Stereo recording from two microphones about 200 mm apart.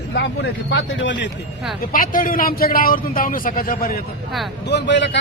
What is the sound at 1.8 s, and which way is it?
A man's voice, 45° left (ahead or behind).